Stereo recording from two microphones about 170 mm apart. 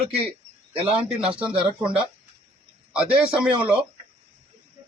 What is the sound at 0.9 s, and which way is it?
A man's voice, 5° right (ahead or behind).